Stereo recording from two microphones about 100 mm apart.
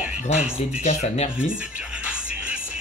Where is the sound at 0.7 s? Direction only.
90° left.